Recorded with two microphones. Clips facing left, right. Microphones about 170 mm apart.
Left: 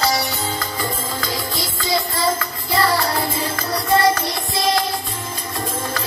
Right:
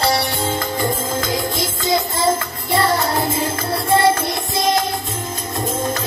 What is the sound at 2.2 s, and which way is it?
Music, 25° right (ahead or behind).